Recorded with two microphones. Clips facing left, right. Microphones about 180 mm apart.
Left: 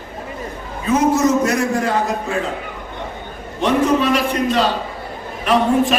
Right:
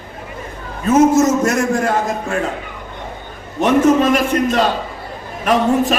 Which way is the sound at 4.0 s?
45° right (ahead or behind).